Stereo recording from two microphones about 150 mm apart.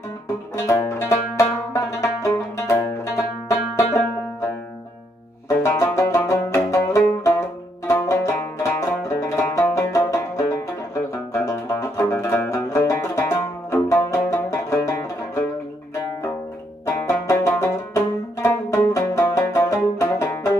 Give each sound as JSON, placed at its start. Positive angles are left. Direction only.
{"t": 0.6, "sound": "music", "side_deg": 20}
{"t": 5.5, "sound": "music", "side_deg": 20}
{"t": 16.8, "sound": "music", "side_deg": 20}